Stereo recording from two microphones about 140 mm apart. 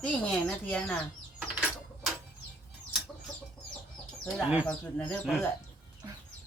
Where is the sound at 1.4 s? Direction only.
5° right (ahead or behind).